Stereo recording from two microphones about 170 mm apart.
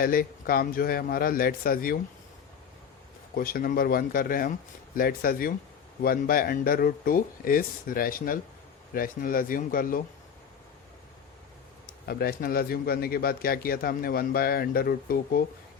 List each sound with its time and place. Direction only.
0.0 s a man's voice: 60° left (ahead or behind)
3.3 s a man's voice: 60° left (ahead or behind)
11.9 s a man's voice: 60° left (ahead or behind)